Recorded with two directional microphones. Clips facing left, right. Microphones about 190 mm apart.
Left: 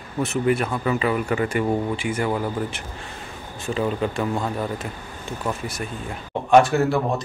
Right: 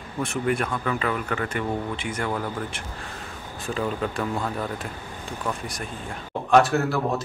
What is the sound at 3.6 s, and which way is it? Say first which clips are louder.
Speech: left 3 dB; 5° left (ahead or behind).